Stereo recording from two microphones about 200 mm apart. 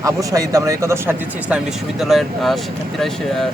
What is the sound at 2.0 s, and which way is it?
Speech, centre (ahead or behind).